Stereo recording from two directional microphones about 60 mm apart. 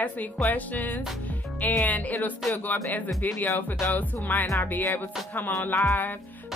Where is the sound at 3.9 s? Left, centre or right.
Left.